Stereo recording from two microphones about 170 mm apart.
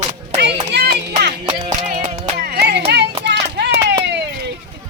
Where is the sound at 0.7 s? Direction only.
80° right.